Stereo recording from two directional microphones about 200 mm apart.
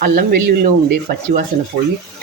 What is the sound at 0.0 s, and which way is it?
Speech, 50° right (ahead or behind).